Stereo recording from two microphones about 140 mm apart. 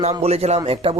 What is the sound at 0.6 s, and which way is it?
Speech, 40° right (ahead or behind).